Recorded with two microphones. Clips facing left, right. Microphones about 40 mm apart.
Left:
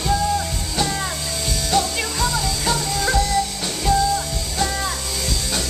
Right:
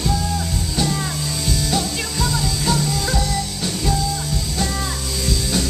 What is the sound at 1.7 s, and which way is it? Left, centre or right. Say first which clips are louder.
Music: left 2 dB; centre.